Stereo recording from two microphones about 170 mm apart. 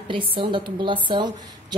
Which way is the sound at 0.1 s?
30° right (ahead or behind).